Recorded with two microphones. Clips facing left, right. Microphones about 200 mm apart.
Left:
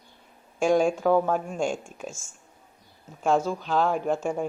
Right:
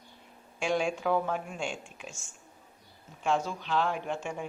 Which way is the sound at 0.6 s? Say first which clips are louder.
Left 8 dB; 45° left (ahead or behind).